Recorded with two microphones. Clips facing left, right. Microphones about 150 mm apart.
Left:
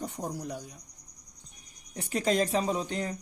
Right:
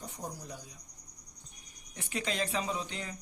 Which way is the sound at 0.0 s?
65° left (ahead or behind).